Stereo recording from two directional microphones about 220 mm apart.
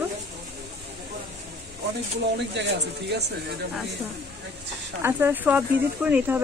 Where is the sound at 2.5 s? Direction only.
50° right (ahead or behind).